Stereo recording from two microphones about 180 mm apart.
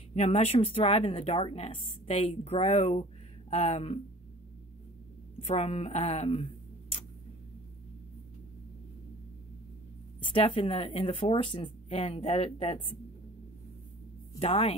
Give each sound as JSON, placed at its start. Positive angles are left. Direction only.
{"t": 0.1, "sound": "speech", "side_deg": 35}
{"t": 5.4, "sound": "speech", "side_deg": 35}
{"t": 10.3, "sound": "speech", "side_deg": 30}
{"t": 14.4, "sound": "speech", "side_deg": 35}